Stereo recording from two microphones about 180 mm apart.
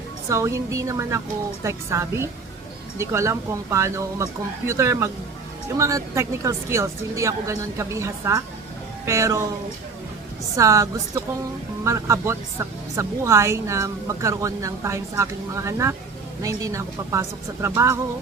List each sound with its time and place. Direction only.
0.3 s a woman's voice: 15° right (ahead or behind)
10.6 s a woman's voice: 15° right (ahead or behind)